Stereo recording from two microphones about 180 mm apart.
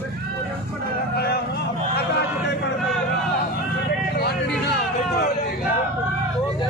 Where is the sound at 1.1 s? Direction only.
60° left (ahead or behind).